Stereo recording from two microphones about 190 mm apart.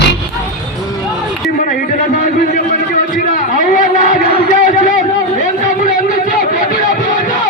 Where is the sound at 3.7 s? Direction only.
45° left (ahead or behind).